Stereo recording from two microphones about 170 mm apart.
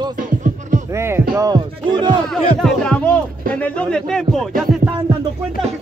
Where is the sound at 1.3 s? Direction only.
25° right (ahead or behind).